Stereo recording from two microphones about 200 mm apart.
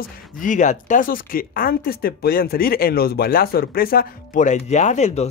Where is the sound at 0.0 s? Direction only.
40° left (ahead or behind).